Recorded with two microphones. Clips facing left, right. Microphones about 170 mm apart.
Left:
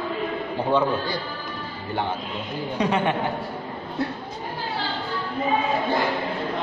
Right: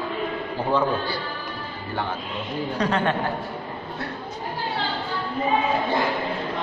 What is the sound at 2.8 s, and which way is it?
Speech, 10° left (ahead or behind).